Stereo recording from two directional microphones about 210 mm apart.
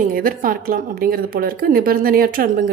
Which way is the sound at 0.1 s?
40° right (ahead or behind).